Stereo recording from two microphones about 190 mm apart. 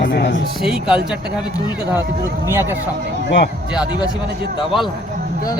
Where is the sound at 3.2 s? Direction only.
65° left (ahead or behind).